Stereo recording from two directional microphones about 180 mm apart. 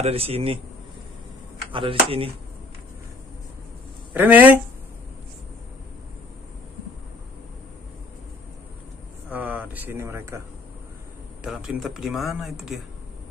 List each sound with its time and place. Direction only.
0.0 s speech: 35° right (ahead or behind)
1.7 s speech: 30° right (ahead or behind)
4.1 s speech: 10° right (ahead or behind)
9.3 s a sound: 10° right (ahead or behind)
11.4 s speech: 5° right (ahead or behind)